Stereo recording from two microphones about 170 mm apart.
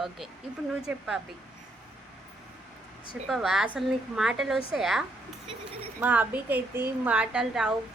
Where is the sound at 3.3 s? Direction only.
Centre (ahead or behind).